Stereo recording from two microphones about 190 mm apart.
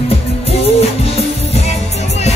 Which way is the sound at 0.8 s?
30° left (ahead or behind).